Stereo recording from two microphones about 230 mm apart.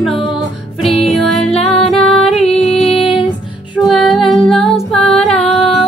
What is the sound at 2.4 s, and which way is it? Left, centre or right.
Music, left.